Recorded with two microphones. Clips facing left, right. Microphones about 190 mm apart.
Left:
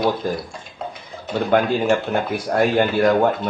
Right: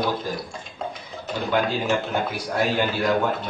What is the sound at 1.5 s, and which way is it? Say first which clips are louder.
Speech: left 5 dB; 55° left (ahead or behind).